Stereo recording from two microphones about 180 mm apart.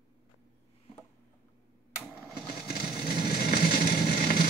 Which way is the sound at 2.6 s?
60° left (ahead or behind).